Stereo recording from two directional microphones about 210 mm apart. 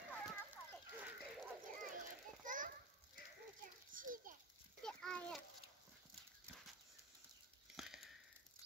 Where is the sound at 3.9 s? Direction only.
40° right (ahead or behind).